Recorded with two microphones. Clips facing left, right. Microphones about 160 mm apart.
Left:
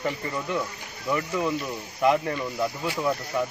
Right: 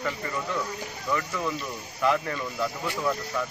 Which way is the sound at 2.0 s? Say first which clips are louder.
Left 3 dB; 15° left (ahead or behind).